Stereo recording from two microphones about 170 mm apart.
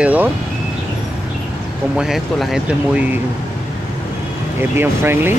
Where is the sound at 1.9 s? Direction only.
Centre (ahead or behind).